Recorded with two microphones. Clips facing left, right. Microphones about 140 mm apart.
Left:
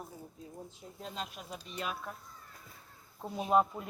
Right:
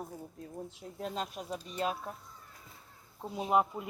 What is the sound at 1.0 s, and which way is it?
Speech, 45° right (ahead or behind).